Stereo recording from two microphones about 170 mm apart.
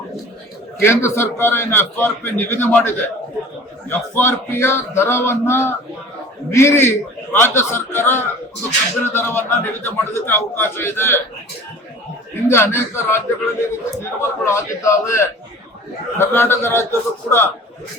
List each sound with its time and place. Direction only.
0.8 s a man's voice: 15° left (ahead or behind)
12.5 s a man's voice: 15° left (ahead or behind)